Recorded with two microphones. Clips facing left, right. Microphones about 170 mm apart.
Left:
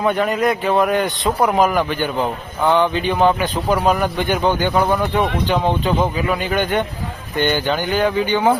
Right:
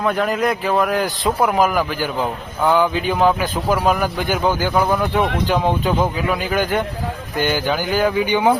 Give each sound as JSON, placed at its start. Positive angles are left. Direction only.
{"t": 0.0, "sound": "speech", "side_deg": 0}